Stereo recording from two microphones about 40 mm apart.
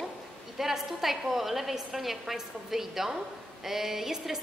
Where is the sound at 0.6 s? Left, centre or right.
Centre.